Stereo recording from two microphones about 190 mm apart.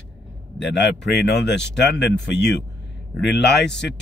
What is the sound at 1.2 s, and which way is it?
A man's voice, 65° left (ahead or behind).